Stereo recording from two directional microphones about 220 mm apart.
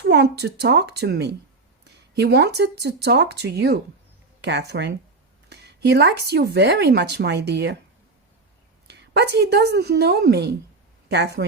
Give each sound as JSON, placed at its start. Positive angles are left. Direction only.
{"t": 0.0, "sound": "speech", "side_deg": -50}
{"t": 8.9, "sound": "speech", "side_deg": -50}